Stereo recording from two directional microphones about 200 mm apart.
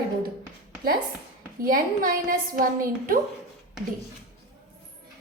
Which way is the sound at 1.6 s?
45° right (ahead or behind).